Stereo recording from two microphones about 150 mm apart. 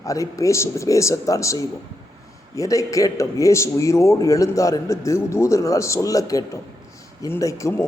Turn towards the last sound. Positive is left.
turn(degrees=20)  # may be behind; listen again after turning